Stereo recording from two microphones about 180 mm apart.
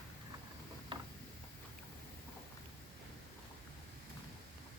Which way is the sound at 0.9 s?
25° right (ahead or behind).